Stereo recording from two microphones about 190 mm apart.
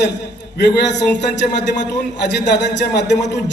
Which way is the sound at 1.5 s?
65° left (ahead or behind).